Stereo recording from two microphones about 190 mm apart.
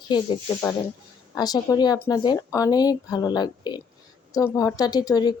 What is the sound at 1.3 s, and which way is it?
Speech, 20° left (ahead or behind).